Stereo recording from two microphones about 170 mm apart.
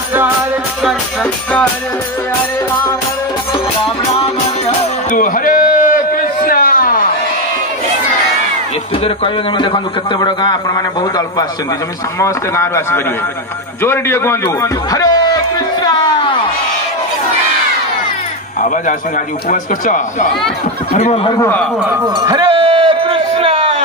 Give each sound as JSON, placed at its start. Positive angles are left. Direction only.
{"t": 0.8, "sound": "speech", "side_deg": 5}
{"t": 4.6, "sound": "a sound", "side_deg": 50}
{"t": 9.0, "sound": "a man's voice", "side_deg": 30}
{"t": 15.5, "sound": "music", "side_deg": 25}
{"t": 18.6, "sound": "a man's voice", "side_deg": 50}
{"t": 20.9, "sound": "speech", "side_deg": 35}
{"t": 21.4, "sound": "a man's voice", "side_deg": 10}
{"t": 21.7, "sound": "speech", "side_deg": -10}
{"t": 22.0, "sound": "a man's voice", "side_deg": -25}
{"t": 22.7, "sound": "a sound", "side_deg": -30}